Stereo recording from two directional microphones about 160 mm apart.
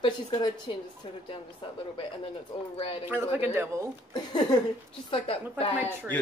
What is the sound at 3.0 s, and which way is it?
Speech, 10° right (ahead or behind).